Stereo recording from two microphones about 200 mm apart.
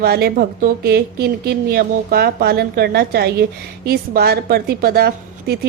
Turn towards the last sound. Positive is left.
turn(degrees=-50)  # may be behind; listen again after turning